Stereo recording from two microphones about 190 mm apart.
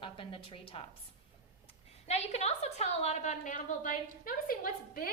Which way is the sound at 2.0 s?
35° left (ahead or behind).